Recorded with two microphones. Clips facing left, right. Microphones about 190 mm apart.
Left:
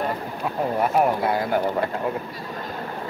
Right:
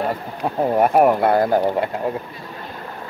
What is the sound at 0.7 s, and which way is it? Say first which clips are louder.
Speech: right 6 dB; 55° right (ahead or behind).